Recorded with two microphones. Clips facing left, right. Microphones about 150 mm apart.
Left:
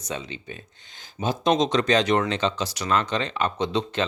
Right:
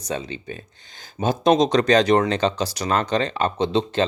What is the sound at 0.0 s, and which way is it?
Speech, 35° right (ahead or behind).